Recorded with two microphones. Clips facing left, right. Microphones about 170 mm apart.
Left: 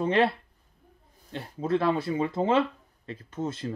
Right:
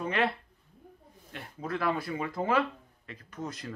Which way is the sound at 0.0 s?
30° left (ahead or behind).